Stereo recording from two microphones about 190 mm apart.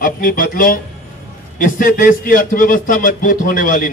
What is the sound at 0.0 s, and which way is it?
A man's voice, 45° left (ahead or behind).